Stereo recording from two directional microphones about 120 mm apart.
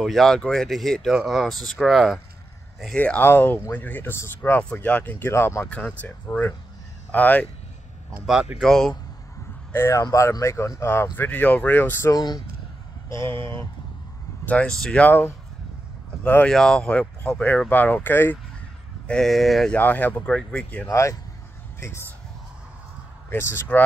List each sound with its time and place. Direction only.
0.0 s speech: centre (ahead or behind)
8.3 s speech: 5° right (ahead or behind)
9.7 s speech: 20° left (ahead or behind)
12.1 s speech: 35° left (ahead or behind)
14.4 s speech: 10° left (ahead or behind)
16.5 s speech: 5° left (ahead or behind)
19.0 s speech: 5° left (ahead or behind)
19.8 s speech: 15° left (ahead or behind)
20.8 s speech: 25° left (ahead or behind)
23.3 s speech: 20° left (ahead or behind)